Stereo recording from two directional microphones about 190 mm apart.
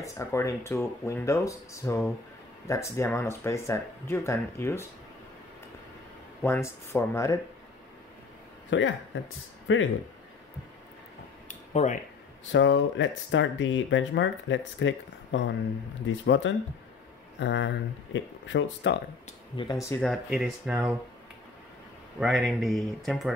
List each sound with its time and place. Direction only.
0.0 s speech: 15° left (ahead or behind)
6.4 s speech: 15° left (ahead or behind)
8.6 s speech: 85° left
11.4 s a sound: 40° left (ahead or behind)
12.5 s speech: 80° left
19.5 s speech: 25° left (ahead or behind)
20.0 s speech: centre (ahead or behind)
22.2 s speech: centre (ahead or behind)